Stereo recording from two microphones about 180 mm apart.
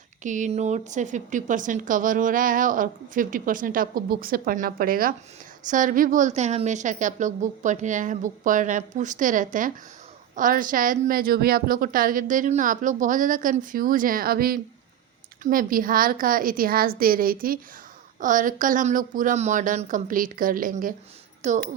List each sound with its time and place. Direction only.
0.2 s speech: 45° right (ahead or behind)